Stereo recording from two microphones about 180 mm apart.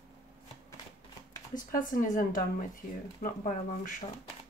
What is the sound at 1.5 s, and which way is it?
Speech, 50° left (ahead or behind).